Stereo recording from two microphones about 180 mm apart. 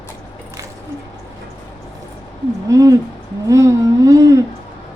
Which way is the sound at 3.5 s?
20° right (ahead or behind).